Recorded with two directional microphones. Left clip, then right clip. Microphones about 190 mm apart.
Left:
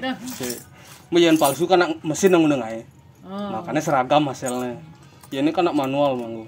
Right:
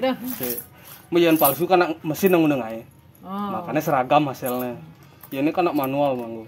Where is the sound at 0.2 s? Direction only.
Centre (ahead or behind).